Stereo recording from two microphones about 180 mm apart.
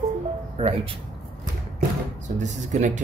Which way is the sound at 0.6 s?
30° right (ahead or behind).